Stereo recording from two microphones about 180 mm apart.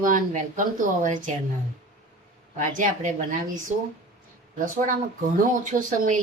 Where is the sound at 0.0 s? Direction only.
45° right (ahead or behind).